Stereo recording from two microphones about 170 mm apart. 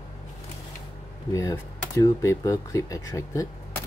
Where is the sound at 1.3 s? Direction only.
20° left (ahead or behind).